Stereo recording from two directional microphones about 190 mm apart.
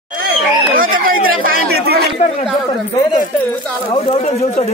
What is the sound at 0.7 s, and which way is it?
Speech, 45° right (ahead or behind).